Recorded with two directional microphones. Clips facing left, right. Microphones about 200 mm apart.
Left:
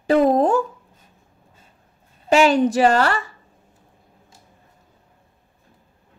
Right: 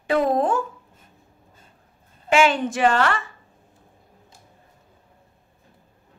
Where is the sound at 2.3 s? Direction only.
40° left (ahead or behind).